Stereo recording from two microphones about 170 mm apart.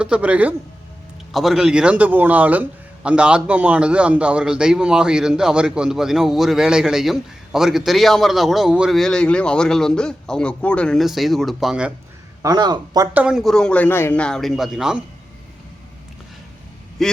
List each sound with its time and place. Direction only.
0.0 s a man's voice: 5° right (ahead or behind)
12.4 s a man's voice: 20° right (ahead or behind)
13.1 s a man's voice: 5° right (ahead or behind)
17.0 s a man's voice: centre (ahead or behind)